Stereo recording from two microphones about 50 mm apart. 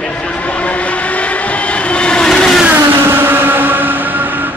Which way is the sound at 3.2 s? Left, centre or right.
Right.